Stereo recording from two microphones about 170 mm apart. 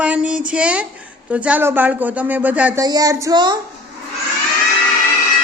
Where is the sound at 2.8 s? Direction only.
20° right (ahead or behind).